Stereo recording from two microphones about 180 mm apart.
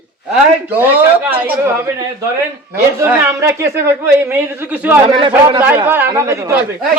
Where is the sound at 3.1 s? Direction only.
15° right (ahead or behind).